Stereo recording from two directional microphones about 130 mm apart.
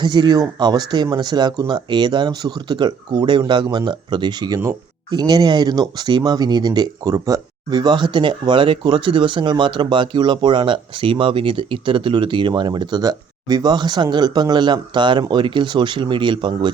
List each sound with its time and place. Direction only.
0.0 s speech: 35° right (ahead or behind)